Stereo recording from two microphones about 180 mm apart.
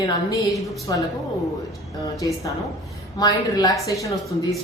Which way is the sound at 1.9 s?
20° left (ahead or behind).